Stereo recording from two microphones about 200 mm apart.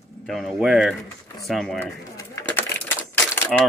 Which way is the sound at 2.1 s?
10° left (ahead or behind).